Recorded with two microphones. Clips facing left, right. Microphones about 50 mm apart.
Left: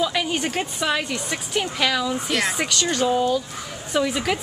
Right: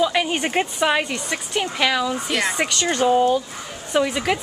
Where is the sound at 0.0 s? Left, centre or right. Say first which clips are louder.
Right 3 dB; centre.